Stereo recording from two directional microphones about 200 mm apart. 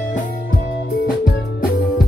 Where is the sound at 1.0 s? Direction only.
45° left (ahead or behind).